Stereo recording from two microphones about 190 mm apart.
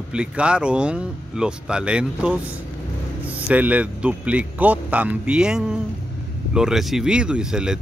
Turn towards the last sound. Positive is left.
turn(degrees=-5)  # may be behind; listen again after turning